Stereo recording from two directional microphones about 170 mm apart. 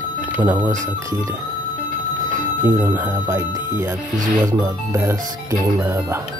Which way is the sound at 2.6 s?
15° right (ahead or behind).